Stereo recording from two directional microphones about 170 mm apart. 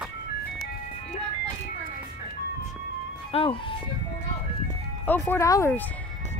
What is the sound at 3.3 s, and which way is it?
Speech, 30° left (ahead or behind).